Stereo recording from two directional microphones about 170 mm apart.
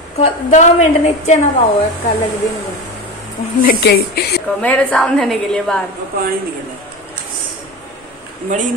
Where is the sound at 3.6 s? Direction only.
65° left (ahead or behind).